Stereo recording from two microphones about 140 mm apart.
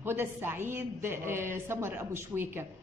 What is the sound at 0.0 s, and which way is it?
A woman's voice, 15° right (ahead or behind).